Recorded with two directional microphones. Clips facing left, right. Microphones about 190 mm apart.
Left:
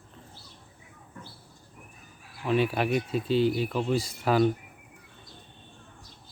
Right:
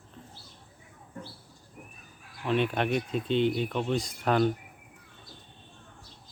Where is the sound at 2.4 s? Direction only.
5° left (ahead or behind).